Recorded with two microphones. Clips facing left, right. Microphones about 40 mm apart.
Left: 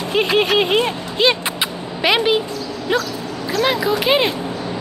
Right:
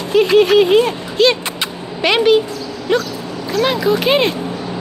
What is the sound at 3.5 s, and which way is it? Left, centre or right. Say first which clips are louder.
Speech: right 3 dB; centre.